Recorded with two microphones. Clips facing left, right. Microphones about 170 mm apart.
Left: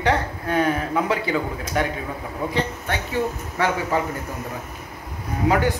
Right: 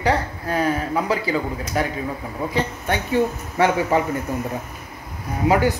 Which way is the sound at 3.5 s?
15° right (ahead or behind).